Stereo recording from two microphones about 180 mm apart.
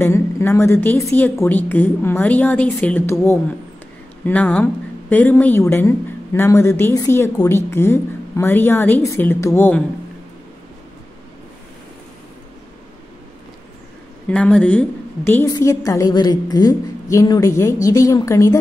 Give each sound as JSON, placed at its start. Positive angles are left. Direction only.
{"t": 0.0, "sound": "a woman's voice", "side_deg": 15}
{"t": 14.3, "sound": "a woman's voice", "side_deg": 5}